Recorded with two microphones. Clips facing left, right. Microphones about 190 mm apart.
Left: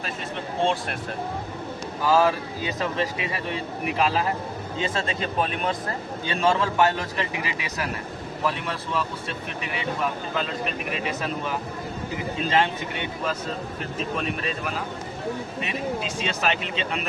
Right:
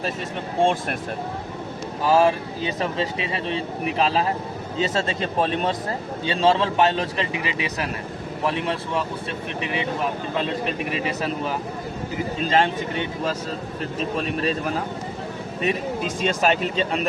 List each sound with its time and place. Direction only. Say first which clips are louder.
0.6 s speech: right 4 dB; 50° right (ahead or behind)
2.0 s speech: right 2 dB; 25° right (ahead or behind)
12.5 s speech: right 2 dB; 45° right (ahead or behind)
15.6 s speech: right 6 dB; 45° right (ahead or behind)